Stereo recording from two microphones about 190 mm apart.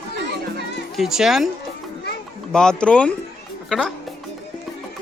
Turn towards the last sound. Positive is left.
turn(degrees=0)  # may be behind; listen again after turning